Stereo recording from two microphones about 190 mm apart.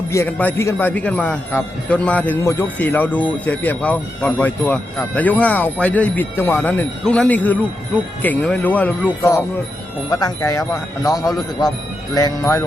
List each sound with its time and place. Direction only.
0.1 s a man's voice: 10° left (ahead or behind)